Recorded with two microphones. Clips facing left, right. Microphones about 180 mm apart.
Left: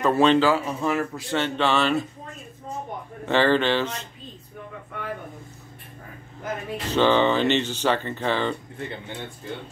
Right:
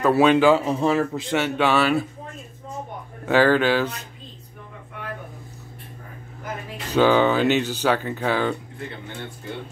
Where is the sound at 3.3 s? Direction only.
5° right (ahead or behind).